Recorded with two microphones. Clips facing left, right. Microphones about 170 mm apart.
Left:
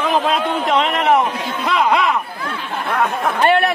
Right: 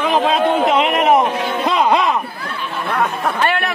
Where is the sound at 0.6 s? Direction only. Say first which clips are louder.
Right 2 dB; 10° right (ahead or behind); by 2.2 s 25° right (ahead or behind).